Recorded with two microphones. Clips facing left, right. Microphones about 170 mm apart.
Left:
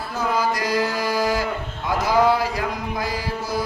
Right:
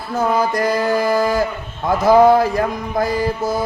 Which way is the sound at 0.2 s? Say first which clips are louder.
Right 5 dB; 50° right (ahead or behind).